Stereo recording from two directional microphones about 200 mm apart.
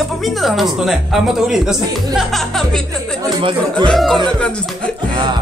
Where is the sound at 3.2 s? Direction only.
20° right (ahead or behind).